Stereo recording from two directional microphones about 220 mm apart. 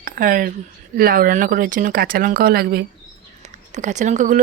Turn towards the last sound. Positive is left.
turn(degrees=-35)  # may be behind; listen again after turning